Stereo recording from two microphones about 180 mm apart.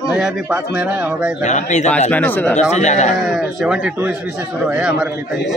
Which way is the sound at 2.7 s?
40° left (ahead or behind).